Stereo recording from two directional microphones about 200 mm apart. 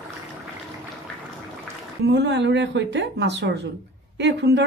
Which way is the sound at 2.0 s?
60° right (ahead or behind).